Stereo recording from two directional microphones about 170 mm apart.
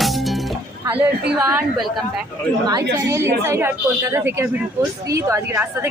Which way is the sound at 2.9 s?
15° right (ahead or behind).